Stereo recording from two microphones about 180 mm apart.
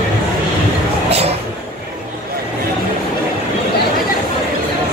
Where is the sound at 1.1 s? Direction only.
35° right (ahead or behind).